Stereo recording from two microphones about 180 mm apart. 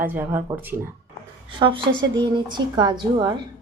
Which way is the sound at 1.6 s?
25° right (ahead or behind).